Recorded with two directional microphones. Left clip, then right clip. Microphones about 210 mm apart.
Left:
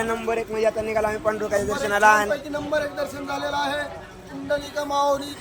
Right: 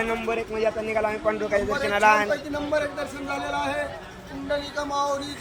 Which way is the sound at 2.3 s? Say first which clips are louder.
Left 1 dB; centre (ahead or behind).